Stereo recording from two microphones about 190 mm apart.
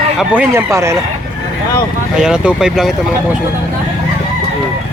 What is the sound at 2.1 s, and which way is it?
Speech, 5° right (ahead or behind).